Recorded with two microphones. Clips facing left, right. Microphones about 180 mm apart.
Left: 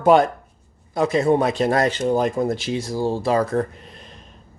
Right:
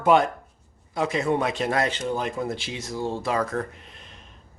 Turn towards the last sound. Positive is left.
turn(degrees=35)  # may be behind; listen again after turning